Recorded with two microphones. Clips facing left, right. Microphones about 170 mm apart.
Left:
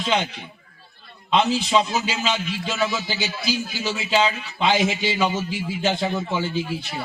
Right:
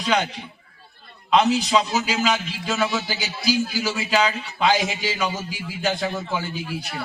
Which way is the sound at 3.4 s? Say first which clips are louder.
Right 6 dB; 25° left (ahead or behind).